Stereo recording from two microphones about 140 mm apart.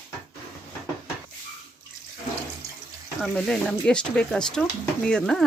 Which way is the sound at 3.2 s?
5° left (ahead or behind).